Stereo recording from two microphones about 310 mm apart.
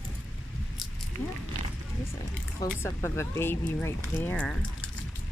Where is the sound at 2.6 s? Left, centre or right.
Centre.